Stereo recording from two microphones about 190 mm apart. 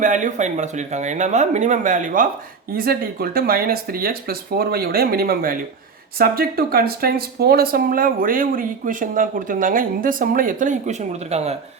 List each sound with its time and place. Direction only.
0.0 s speech: 40° right (ahead or behind)